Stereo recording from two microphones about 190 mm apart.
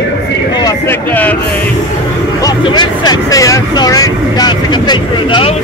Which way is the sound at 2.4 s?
20° left (ahead or behind).